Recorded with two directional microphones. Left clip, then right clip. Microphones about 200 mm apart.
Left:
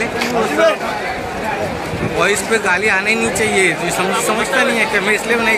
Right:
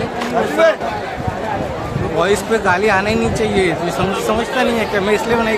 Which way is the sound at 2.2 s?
30° right (ahead or behind).